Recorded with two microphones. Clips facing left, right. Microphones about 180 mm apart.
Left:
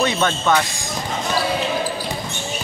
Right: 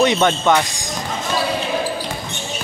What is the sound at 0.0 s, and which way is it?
Speech, 20° right (ahead or behind).